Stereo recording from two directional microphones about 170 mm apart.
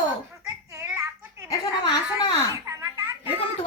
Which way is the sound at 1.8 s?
25° left (ahead or behind).